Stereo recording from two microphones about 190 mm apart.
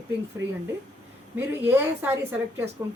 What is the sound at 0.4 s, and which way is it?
Speech, 75° right (ahead or behind).